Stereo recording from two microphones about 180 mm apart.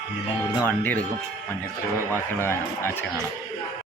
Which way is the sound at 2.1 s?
15° left (ahead or behind).